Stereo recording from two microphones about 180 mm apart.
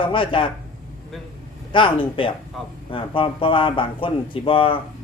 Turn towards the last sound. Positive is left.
turn(degrees=30)  # may be behind; listen again after turning